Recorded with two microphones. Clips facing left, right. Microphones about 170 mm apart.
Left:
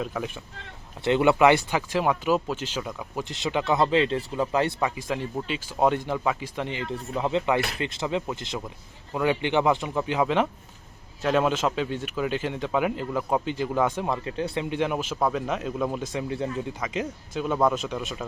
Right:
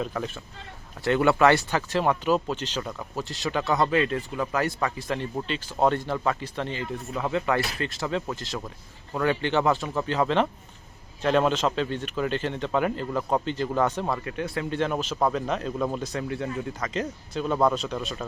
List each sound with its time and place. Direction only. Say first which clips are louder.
0.0 s speech: even; 5° left (ahead or behind)
1.0 s a man's voice: left 1 dB; 20° left (ahead or behind)
3.2 s a man's voice: left 1 dB; 20° left (ahead or behind)
14.3 s a man's voice: left 1 dB; 25° left (ahead or behind); by 16.0 s 5° left (ahead or behind)
16.3 s speech: left 1 dB; 30° left (ahead or behind)
16.8 s a man's voice: even; 10° left (ahead or behind)